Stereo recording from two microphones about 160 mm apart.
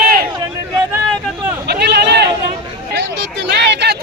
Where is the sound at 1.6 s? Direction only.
90° right.